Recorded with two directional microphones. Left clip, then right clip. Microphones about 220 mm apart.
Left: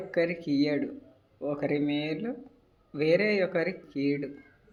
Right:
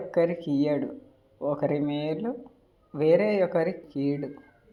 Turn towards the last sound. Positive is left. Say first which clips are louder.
# right 1 dB
turn(degrees=-5)  # may be behind; listen again after turning